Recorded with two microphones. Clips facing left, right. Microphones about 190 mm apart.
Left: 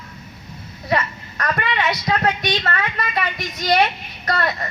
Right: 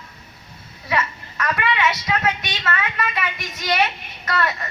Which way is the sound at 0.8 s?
40° left (ahead or behind).